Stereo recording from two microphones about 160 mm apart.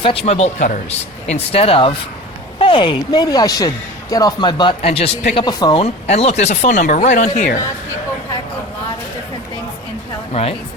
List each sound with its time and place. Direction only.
0.0 s speech: 35° left (ahead or behind)
5.5 s speech: 25° left (ahead or behind)
5.8 s speech: 40° left (ahead or behind)
10.3 s speech: 40° left (ahead or behind)